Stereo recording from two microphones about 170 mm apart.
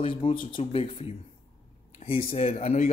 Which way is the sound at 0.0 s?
30° left (ahead or behind).